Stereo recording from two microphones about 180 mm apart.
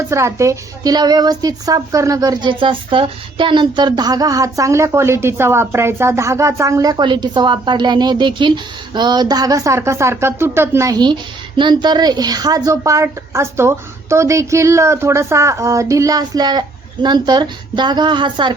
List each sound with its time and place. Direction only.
0.1 s a woman's voice: 15° right (ahead or behind)